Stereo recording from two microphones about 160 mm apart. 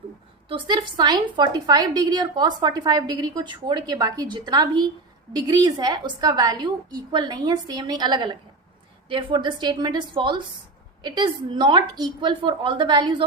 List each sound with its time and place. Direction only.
0.4 s a woman's voice: 30° right (ahead or behind)